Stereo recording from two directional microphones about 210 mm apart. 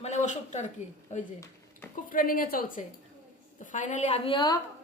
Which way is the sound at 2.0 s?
40° left (ahead or behind).